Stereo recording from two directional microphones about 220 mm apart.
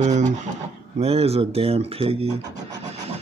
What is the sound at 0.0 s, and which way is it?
Speech, 30° right (ahead or behind).